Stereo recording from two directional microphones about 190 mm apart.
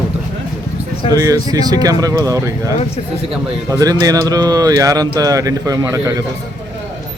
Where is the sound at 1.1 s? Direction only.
20° right (ahead or behind).